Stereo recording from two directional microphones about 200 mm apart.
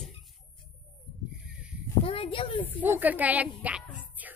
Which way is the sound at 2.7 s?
10° right (ahead or behind).